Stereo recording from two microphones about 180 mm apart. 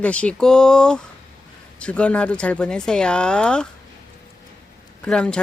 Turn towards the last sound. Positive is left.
turn(degrees=5)  # may be behind; listen again after turning